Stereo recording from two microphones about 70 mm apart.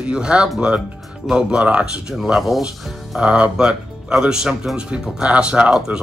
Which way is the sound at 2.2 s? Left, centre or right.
Centre.